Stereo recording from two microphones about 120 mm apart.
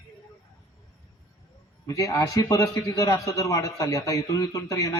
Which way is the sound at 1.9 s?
25° left (ahead or behind).